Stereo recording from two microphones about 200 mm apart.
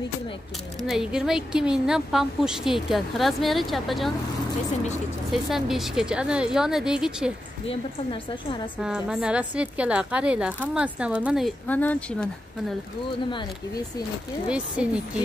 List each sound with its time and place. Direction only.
0.8 s a woman's voice: centre (ahead or behind)
5.3 s a woman's voice: centre (ahead or behind)
7.6 s a woman's voice: 25° left (ahead or behind)
8.8 s a woman's voice: 5° right (ahead or behind)
14.8 s a woman's voice: 5° right (ahead or behind)